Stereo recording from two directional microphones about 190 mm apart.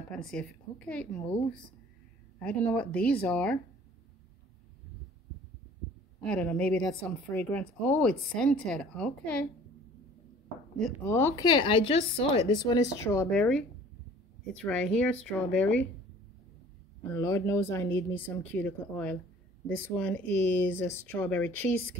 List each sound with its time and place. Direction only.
0.3 s a woman's voice: 5° left (ahead or behind)
2.3 s speech: 5° left (ahead or behind)
6.2 s a woman's voice: 10° left (ahead or behind)
10.8 s a woman's voice: 10° left (ahead or behind)
13.3 s a woman's voice: centre (ahead or behind)
17.0 s speech: 15° left (ahead or behind)